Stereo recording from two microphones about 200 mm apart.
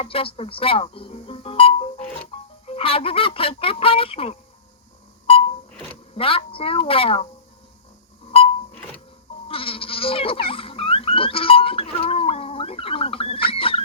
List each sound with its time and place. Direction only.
0.0 s speech: 25° left (ahead or behind)
2.6 s goose: 30° left (ahead or behind)
5.2 s beep: 30° left (ahead or behind)
6.1 s goose: 25° left (ahead or behind)
8.3 s beep: 30° left (ahead or behind)
9.5 s goat: 25° left (ahead or behind)
10.5 s a sound: 30° left (ahead or behind)